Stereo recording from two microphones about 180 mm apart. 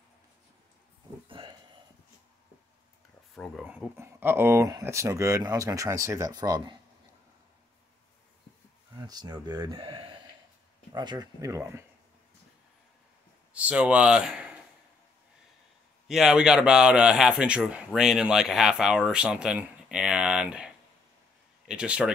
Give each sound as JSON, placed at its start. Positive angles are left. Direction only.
{"t": 1.4, "sound": "a sound", "side_deg": -25}
{"t": 3.9, "sound": "speech", "side_deg": -10}
{"t": 8.9, "sound": "speech", "side_deg": -20}
{"t": 13.5, "sound": "speech", "side_deg": -5}
{"t": 16.1, "sound": "a man's voice", "side_deg": 0}